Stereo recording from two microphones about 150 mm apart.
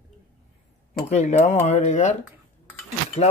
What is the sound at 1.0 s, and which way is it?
Speech, 45° left (ahead or behind).